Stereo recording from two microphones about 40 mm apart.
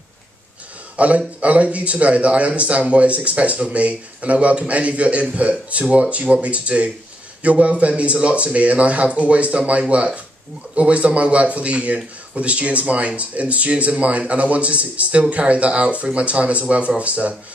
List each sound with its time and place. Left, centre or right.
0.9 s speech: right